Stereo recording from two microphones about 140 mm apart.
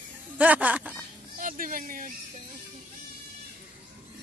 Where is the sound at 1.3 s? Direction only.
85° right.